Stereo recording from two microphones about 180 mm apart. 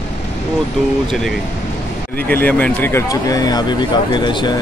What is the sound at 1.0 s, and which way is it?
Speech, centre (ahead or behind).